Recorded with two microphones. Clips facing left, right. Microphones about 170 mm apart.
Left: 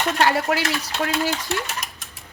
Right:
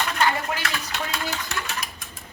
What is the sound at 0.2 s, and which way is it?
Dishes, 80° left.